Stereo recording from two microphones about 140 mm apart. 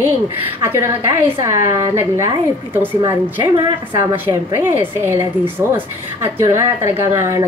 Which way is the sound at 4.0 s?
15° right (ahead or behind).